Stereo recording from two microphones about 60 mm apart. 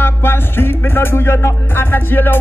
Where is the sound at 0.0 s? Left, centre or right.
Left.